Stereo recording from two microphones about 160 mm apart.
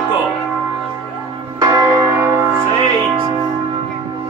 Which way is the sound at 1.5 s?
25° right (ahead or behind).